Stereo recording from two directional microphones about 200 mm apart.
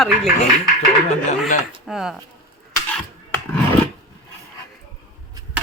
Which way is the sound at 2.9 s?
5° left (ahead or behind).